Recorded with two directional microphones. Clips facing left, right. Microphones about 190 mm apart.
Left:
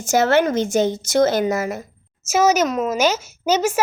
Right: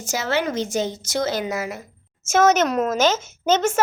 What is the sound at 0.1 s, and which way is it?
A woman's voice, 50° left (ahead or behind).